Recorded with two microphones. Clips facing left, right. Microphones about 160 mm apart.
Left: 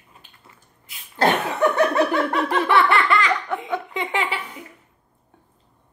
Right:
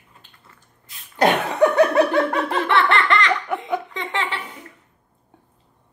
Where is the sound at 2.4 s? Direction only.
10° left (ahead or behind).